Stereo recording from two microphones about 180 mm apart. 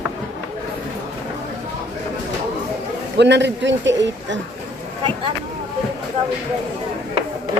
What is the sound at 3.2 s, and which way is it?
A man's voice, 70° right (ahead or behind).